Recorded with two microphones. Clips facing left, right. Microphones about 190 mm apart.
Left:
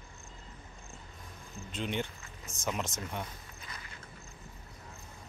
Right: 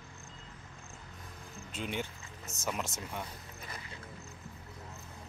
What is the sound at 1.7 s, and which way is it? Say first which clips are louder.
Speech: left 2 dB; 5° right (ahead or behind).